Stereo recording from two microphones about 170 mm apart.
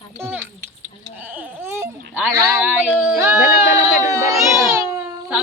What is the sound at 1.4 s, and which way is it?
Baby cry, 15° right (ahead or behind).